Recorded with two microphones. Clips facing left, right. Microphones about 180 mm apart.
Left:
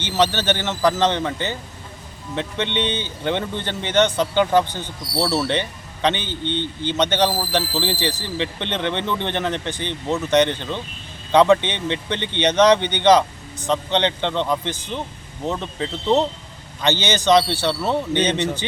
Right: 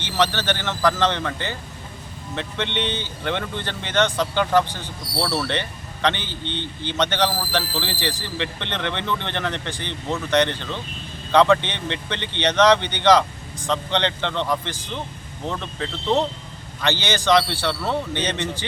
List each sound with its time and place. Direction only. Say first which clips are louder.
0.2 s speech: left 2 dB; 20° left (ahead or behind)
2.6 s speech: left 3 dB; 55° left (ahead or behind)
3.2 s speech: left 3 dB; 15° left (ahead or behind)
6.2 s speech: left 5 dB; 55° left (ahead or behind)
7.0 s speech: left 2 dB; 20° left (ahead or behind)